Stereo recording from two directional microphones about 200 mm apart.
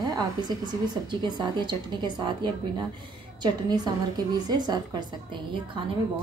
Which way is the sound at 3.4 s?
20° right (ahead or behind).